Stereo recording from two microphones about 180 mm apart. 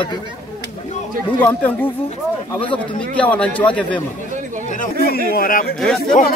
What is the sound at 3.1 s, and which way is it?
Speech, 5° left (ahead or behind).